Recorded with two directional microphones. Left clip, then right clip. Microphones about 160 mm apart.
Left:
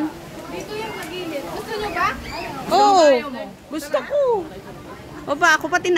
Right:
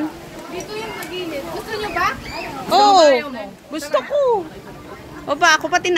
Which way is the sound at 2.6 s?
25° left (ahead or behind).